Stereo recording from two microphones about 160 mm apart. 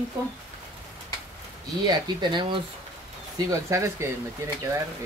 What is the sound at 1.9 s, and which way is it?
Speech, 30° right (ahead or behind).